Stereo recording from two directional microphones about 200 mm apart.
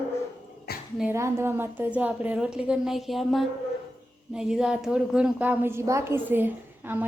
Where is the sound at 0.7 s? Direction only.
55° left (ahead or behind).